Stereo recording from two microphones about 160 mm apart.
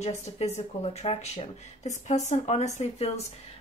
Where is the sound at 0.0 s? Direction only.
40° left (ahead or behind).